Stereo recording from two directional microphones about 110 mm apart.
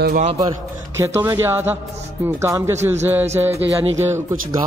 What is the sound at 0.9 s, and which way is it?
Speech, 25° right (ahead or behind).